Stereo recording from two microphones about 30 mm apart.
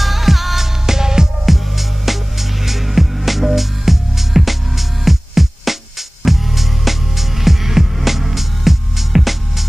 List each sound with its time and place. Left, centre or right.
0.0 s music: centre
0.8 s music: centre
1.4 s music: centre